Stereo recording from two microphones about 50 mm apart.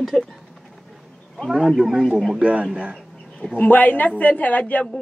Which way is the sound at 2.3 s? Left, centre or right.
Right.